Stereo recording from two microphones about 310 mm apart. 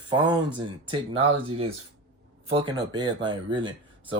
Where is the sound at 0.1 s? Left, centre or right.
Centre.